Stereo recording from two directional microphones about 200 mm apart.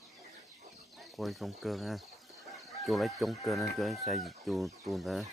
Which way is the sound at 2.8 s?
Centre (ahead or behind).